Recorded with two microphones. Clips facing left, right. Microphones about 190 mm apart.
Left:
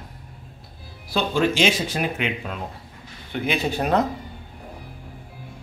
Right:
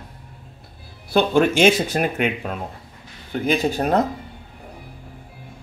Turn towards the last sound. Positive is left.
turn(degrees=-40)  # may be behind; listen again after turning